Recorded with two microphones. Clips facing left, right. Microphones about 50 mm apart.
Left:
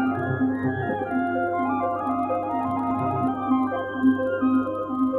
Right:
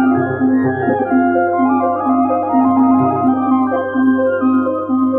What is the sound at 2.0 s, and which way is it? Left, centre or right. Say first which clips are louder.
Organ: right 11 dB; centre.